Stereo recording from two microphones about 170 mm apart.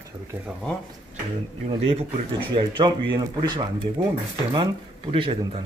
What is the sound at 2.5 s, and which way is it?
Speech, 25° right (ahead or behind).